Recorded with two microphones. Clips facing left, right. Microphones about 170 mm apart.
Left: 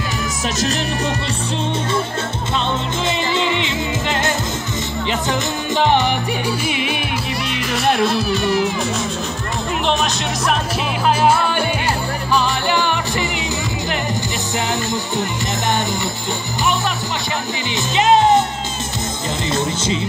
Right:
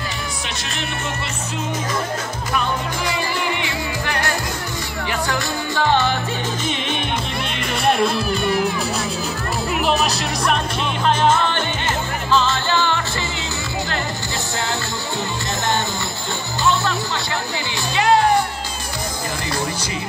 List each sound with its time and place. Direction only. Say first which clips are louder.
3.1 s music: left 5 dB; 20° left (ahead or behind); by 8.5 s centre (ahead or behind)
9.8 s music: left 1 dB; centre (ahead or behind); by 13.9 s 15° left (ahead or behind)
17.9 s music: left 3 dB; 20° left (ahead or behind)
19.5 s music: left 7 dB; 25° left (ahead or behind)